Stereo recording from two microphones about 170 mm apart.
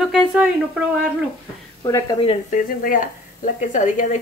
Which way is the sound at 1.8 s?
20° left (ahead or behind).